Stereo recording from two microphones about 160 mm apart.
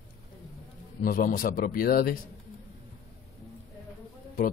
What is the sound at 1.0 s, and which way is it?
A man's voice, 60° left (ahead or behind).